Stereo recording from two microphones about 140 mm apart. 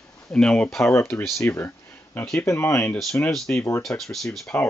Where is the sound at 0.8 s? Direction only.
20° left (ahead or behind).